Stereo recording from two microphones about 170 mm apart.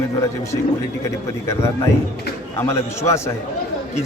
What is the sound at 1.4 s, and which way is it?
Speech, 15° left (ahead or behind).